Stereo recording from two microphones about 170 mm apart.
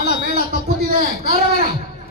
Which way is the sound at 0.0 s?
70° left (ahead or behind).